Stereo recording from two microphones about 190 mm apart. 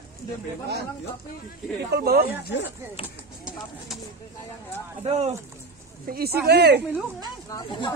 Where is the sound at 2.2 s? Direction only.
55° left (ahead or behind).